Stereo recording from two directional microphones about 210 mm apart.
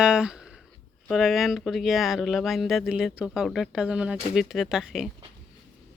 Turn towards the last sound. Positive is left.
turn(degrees=0)  # may be behind; listen again after turning